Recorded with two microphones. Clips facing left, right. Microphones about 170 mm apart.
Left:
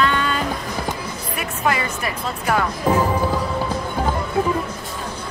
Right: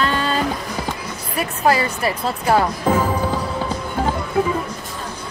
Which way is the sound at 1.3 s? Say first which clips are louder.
Right 5 dB; 35° right (ahead or behind).